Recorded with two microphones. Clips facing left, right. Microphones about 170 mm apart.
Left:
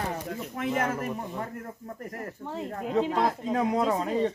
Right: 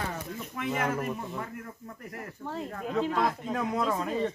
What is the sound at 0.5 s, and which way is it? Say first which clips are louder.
Speech: left 1 dB; 40° left (ahead or behind).